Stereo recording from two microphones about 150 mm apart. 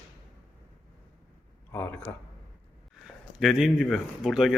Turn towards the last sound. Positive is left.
turn(degrees=0)  # may be behind; listen again after turning